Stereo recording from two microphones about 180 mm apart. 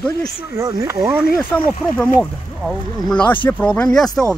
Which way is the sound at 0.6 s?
20° right (ahead or behind).